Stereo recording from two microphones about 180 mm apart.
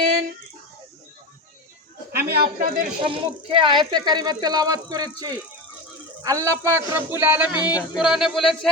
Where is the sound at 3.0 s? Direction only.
30° right (ahead or behind).